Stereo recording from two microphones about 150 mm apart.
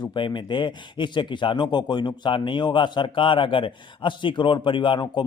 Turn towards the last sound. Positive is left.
turn(degrees=30)  # may be behind; listen again after turning